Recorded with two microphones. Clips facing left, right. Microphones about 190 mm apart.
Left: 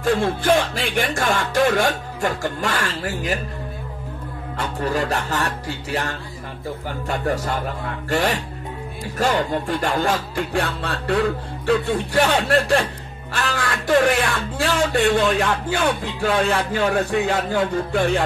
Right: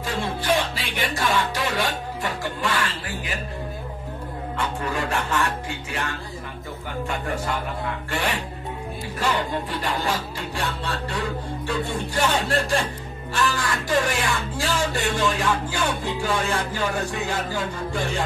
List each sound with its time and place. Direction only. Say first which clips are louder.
0.0 s music: left 8 dB; 50° left (ahead or behind)
4.6 s music: left 4 dB; 40° left (ahead or behind)
8.1 s speech: left 7 dB; 40° left (ahead or behind)
9.2 s music: left 5 dB; 45° left (ahead or behind)
11.6 s speech: left 9 dB; 65° left (ahead or behind)